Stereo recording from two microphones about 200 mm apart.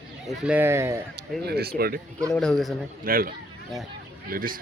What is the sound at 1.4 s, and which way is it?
Speech, 50° right (ahead or behind).